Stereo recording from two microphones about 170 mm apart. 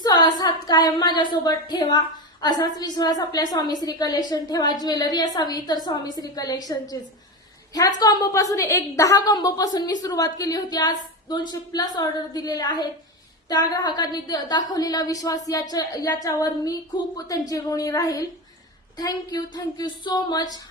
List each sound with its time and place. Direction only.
0.0 s a woman's voice: 25° left (ahead or behind)